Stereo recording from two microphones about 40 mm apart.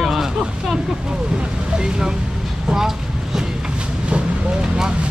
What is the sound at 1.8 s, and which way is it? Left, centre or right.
Speech, centre.